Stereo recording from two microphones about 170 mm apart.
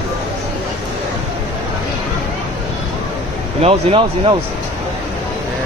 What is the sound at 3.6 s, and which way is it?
Speech, 35° right (ahead or behind).